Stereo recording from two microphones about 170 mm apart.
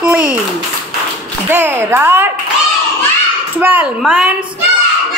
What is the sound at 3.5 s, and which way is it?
Speech, 10° right (ahead or behind).